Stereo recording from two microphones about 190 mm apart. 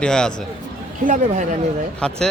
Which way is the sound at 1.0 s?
40° right (ahead or behind).